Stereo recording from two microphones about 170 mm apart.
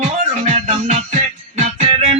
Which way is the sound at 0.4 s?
45° right (ahead or behind).